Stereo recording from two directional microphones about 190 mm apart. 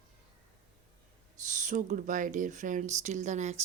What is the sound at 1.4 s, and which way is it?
Speech, 40° right (ahead or behind).